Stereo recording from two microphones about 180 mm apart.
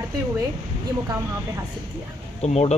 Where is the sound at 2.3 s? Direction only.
35° left (ahead or behind).